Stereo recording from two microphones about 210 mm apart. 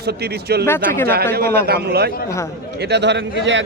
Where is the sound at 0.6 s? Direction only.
10° left (ahead or behind).